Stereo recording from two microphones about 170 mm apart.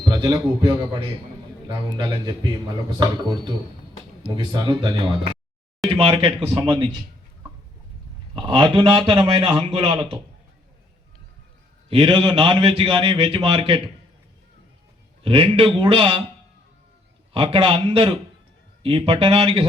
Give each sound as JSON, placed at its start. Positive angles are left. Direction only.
{"t": 0.0, "sound": "a man's voice", "side_deg": -25}
{"t": 1.9, "sound": "a man's voice", "side_deg": -25}
{"t": 4.4, "sound": "a man's voice", "side_deg": -25}
{"t": 8.4, "sound": "a man's voice", "side_deg": -30}
{"t": 11.9, "sound": "a man's voice", "side_deg": -30}
{"t": 15.2, "sound": "a man's voice", "side_deg": -35}
{"t": 17.3, "sound": "a man's voice", "side_deg": -35}